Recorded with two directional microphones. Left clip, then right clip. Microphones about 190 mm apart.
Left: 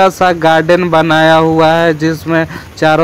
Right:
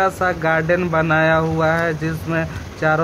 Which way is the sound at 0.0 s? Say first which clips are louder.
Left 9 dB; 20° left (ahead or behind).